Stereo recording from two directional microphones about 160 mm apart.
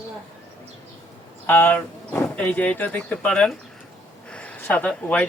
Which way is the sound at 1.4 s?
10° left (ahead or behind).